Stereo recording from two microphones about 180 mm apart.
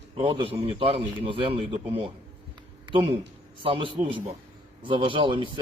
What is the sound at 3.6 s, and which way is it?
A man's voice, 30° right (ahead or behind).